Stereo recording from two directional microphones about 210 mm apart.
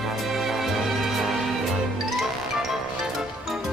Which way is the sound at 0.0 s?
Centre (ahead or behind).